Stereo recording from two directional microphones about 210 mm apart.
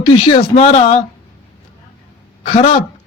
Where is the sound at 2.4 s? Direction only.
30° left (ahead or behind).